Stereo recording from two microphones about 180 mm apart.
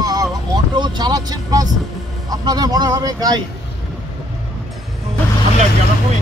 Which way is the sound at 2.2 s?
20° right (ahead or behind).